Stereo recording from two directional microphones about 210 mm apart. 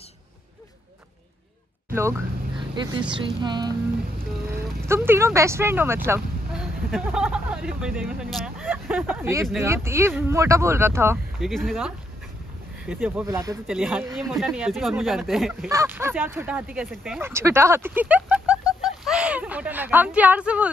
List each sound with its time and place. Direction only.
1.9 s speech: 10° right (ahead or behind)
2.7 s music: 20° right (ahead or behind)
4.5 s speech: 10° right (ahead or behind)
6.0 s a sound: 10° right (ahead or behind)
6.6 s speech: centre (ahead or behind)
11.3 s speech: centre (ahead or behind)
15.7 s speech: 10° right (ahead or behind)